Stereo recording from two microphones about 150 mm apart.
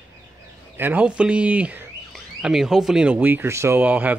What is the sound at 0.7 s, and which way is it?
Speech, 10° right (ahead or behind).